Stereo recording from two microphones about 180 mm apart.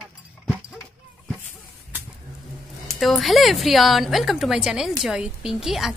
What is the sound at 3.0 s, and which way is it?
A woman's voice, centre (ahead or behind).